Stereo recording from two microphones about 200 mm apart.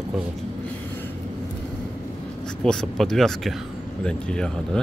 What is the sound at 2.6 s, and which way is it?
Speech, 5° left (ahead or behind).